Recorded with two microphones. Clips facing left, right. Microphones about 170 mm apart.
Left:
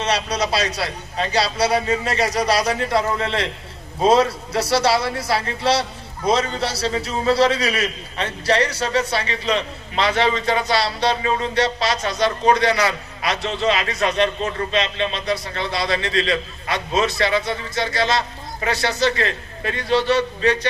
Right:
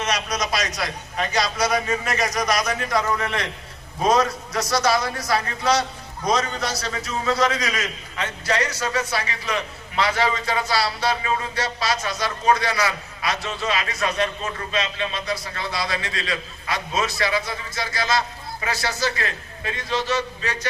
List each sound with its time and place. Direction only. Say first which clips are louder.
0.0 s a man's voice: left 4 dB; 30° left (ahead or behind)